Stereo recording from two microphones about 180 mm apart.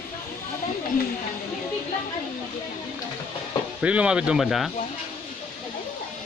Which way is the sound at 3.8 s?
5° right (ahead or behind).